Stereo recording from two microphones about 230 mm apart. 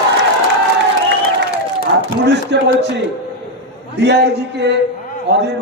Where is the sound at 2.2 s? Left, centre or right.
Right.